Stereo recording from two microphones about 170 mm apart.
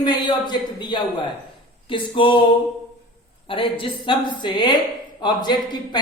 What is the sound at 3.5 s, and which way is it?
A man's voice, 30° left (ahead or behind).